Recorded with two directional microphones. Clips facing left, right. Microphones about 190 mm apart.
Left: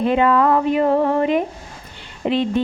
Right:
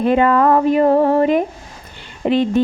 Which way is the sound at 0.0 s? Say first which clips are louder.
Right 2 dB; 45° right (ahead or behind).